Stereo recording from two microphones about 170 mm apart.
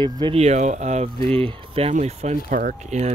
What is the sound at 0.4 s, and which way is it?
Speech, 40° right (ahead or behind).